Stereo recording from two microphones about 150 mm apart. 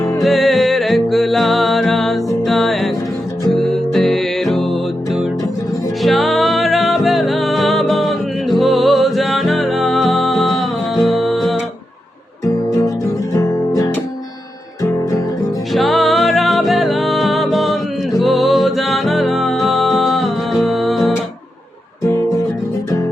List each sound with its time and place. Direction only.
0.2 s music: centre (ahead or behind)
13.3 s music: 20° left (ahead or behind)
15.7 s music: centre (ahead or behind)